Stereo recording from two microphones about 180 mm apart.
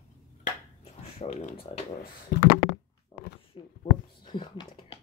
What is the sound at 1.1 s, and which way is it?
Speech, 40° left (ahead or behind).